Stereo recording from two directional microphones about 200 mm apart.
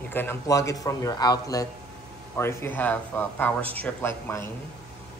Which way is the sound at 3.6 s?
30° right (ahead or behind).